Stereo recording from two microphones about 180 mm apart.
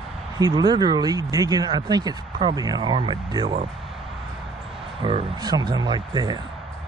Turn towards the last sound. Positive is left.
turn(degrees=-25)  # may be behind; listen again after turning